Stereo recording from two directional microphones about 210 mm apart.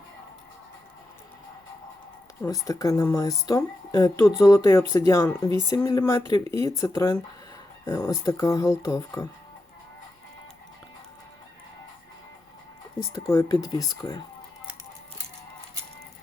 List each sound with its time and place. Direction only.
2.4 s speech: 15° left (ahead or behind)
13.3 s speech: 20° left (ahead or behind)